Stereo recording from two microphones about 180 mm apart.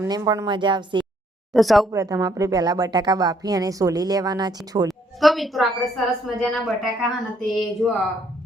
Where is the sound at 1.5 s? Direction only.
Centre (ahead or behind).